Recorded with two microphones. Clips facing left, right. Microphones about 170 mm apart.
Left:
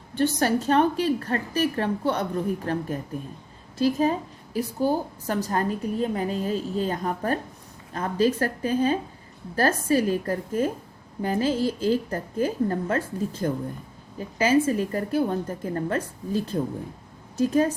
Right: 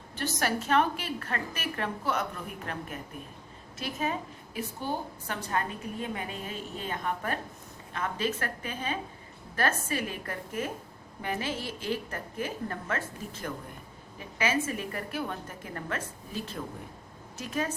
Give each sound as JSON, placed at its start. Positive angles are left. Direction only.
{"t": 0.2, "sound": "a woman's voice", "side_deg": 30}